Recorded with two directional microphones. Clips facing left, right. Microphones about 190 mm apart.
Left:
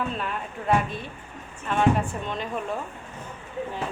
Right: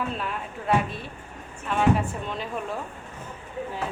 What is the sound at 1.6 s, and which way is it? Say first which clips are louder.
Speech: even; 5° right (ahead or behind).